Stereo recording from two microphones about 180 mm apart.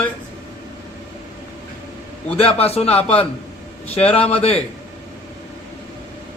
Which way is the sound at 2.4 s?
35° left (ahead or behind).